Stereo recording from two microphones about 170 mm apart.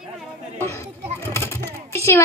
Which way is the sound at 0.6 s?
15° left (ahead or behind).